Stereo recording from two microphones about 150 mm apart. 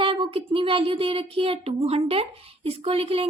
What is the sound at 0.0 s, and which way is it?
A woman's voice, 35° right (ahead or behind).